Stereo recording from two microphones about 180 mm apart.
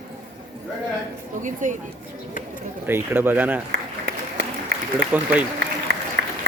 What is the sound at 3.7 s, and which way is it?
Applause, 65° right (ahead or behind).